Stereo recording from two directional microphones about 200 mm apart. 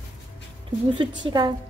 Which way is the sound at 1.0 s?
25° right (ahead or behind).